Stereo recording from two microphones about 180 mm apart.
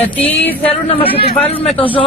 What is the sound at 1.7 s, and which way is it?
Speech, 30° left (ahead or behind).